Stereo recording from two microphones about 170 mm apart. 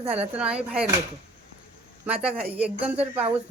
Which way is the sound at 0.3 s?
5° right (ahead or behind).